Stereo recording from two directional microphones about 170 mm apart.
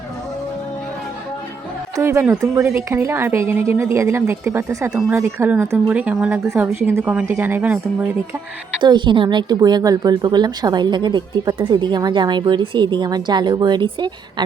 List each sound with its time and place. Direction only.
2.0 s speech: 15° right (ahead or behind)
8.8 s speech: 25° right (ahead or behind)